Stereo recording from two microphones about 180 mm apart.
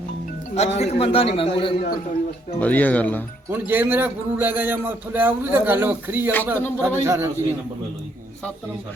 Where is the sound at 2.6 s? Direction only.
10° left (ahead or behind).